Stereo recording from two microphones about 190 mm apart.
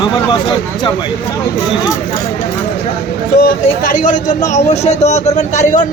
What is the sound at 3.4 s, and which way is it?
Speech, 45° left (ahead or behind).